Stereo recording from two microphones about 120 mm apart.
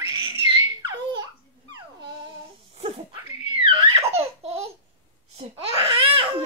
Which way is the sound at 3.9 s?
60° right (ahead or behind).